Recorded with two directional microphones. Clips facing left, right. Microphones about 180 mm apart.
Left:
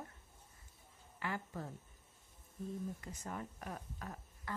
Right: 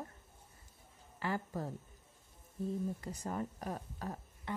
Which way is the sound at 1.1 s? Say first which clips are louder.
Right 5 dB; 35° right (ahead or behind).